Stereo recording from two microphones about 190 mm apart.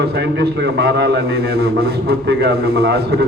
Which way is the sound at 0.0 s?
60° right (ahead or behind).